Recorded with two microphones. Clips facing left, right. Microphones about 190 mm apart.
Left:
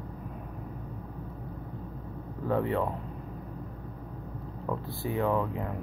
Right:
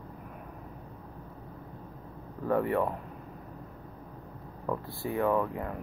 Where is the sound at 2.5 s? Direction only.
20° left (ahead or behind).